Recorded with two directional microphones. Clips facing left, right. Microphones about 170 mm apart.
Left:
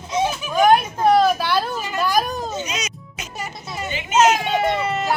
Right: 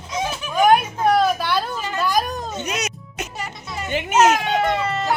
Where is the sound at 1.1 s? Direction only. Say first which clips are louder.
Left 2 dB; 5° left (ahead or behind).